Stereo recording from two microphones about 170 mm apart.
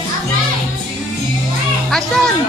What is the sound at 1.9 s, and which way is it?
Music, 5° left (ahead or behind).